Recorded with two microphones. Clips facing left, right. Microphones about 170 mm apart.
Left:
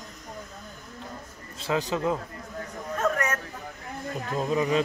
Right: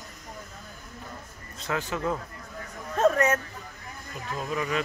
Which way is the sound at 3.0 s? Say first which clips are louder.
Right 5 dB; 25° right (ahead or behind).